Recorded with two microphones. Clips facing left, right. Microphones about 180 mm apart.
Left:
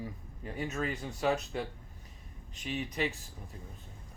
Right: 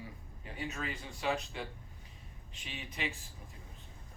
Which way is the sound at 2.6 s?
40° left (ahead or behind).